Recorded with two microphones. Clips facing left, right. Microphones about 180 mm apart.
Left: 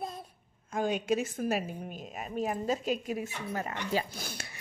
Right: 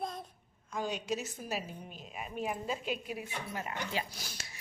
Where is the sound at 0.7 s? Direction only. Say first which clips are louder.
Left 6 dB; 50° left (ahead or behind).